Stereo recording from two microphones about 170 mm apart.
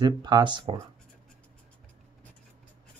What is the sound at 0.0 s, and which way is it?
Speech, 25° right (ahead or behind).